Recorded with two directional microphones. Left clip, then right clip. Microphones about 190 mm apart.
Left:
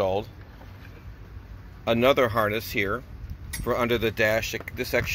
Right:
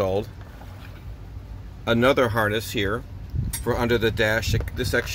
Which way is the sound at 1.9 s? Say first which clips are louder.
Right 1 dB; 5° right (ahead or behind).